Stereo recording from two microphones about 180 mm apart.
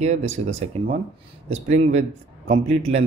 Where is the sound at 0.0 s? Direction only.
40° right (ahead or behind).